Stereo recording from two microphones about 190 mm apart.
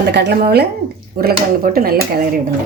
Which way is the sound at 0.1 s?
60° right (ahead or behind).